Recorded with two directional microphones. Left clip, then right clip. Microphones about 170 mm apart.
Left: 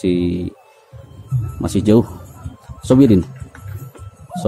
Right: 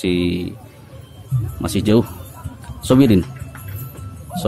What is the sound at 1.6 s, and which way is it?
A man's voice, 25° left (ahead or behind).